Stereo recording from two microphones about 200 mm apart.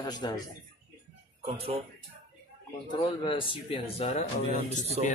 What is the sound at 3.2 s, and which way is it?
Speech, 25° left (ahead or behind).